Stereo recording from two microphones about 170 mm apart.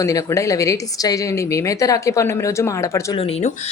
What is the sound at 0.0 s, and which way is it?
Speech, 20° left (ahead or behind).